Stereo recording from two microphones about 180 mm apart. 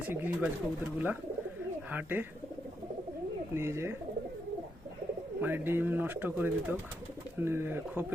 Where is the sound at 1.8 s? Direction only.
10° right (ahead or behind).